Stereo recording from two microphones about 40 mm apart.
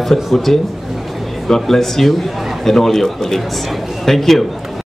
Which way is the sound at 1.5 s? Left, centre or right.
Centre.